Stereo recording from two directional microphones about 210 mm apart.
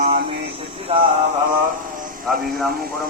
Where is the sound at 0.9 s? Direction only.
25° right (ahead or behind).